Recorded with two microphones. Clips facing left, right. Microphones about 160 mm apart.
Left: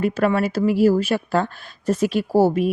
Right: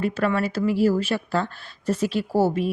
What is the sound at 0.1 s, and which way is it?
Speech, 45° left (ahead or behind).